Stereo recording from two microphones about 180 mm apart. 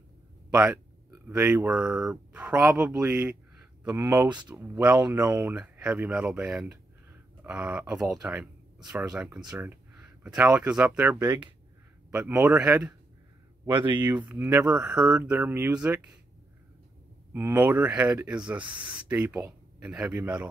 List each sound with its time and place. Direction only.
0.6 s speech: 10° right (ahead or behind)
13.7 s speech: 25° right (ahead or behind)
14.0 s speech: 10° right (ahead or behind)
17.3 s speech: 10° right (ahead or behind)
18.6 s speech: 25° right (ahead or behind)
19.0 s speech: 10° right (ahead or behind)